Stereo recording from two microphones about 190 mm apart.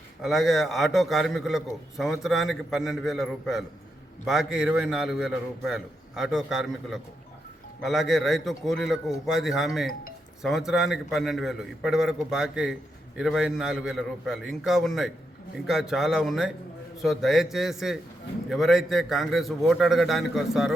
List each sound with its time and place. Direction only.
0.2 s a man's voice: centre (ahead or behind)